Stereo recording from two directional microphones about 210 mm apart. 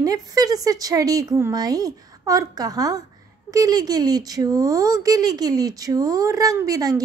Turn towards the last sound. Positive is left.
turn(degrees=-15)  # may be behind; listen again after turning